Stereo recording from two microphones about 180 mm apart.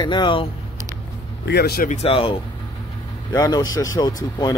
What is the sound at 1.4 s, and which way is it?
Speech, 65° left (ahead or behind).